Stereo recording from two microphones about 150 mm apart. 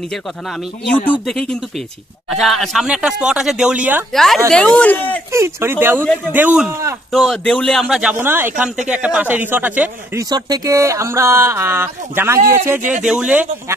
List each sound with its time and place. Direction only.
1.2 s speech: 5° left (ahead or behind)
4.1 s speech: centre (ahead or behind)
5.3 s speech: 15° right (ahead or behind)
7.1 s speech: centre (ahead or behind)
7.8 s speech: 5° right (ahead or behind)
10.3 s speech: 25° right (ahead or behind); by 13.7 s 10° right (ahead or behind)